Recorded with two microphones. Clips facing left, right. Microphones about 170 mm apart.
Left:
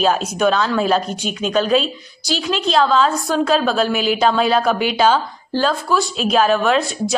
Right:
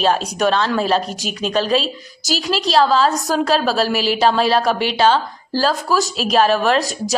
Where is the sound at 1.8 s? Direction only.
40° right (ahead or behind).